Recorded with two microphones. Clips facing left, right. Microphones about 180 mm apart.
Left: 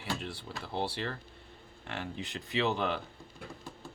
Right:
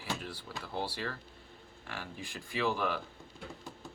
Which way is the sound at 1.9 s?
20° left (ahead or behind).